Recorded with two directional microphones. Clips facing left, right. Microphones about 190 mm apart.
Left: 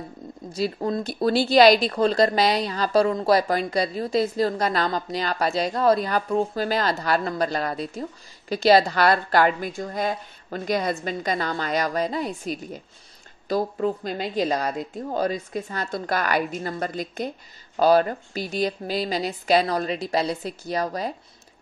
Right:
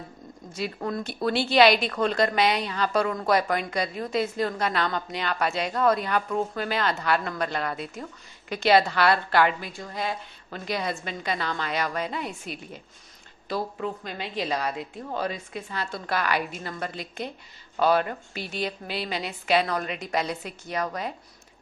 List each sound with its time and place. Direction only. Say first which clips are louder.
0.5 s speech: left 5 dB; 35° left (ahead or behind)
1.0 s a woman's voice: left 4 dB; 35° left (ahead or behind)